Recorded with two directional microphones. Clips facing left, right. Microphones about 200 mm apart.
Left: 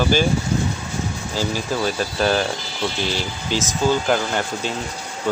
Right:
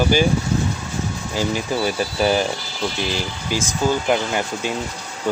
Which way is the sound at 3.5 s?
10° right (ahead or behind).